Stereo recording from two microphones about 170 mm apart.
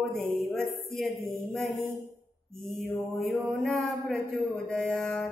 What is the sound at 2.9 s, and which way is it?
A man's voice, centre (ahead or behind).